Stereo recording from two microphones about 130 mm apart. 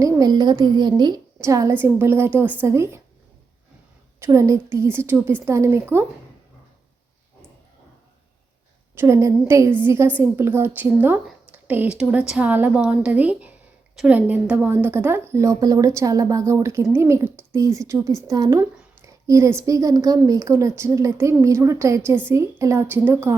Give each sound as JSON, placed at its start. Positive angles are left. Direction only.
{"t": 0.0, "sound": "a woman's voice", "side_deg": -30}
{"t": 4.2, "sound": "a woman's voice", "side_deg": -25}
{"t": 9.0, "sound": "a woman's voice", "side_deg": -20}
{"t": 14.2, "sound": "a woman's voice", "side_deg": -15}